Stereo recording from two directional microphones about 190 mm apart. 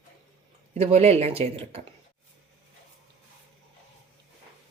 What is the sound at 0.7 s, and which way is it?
Speech, 35° right (ahead or behind).